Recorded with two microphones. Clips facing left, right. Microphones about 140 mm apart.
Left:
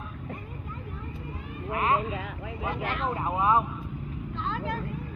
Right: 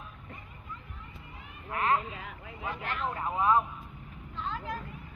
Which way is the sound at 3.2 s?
15° left (ahead or behind).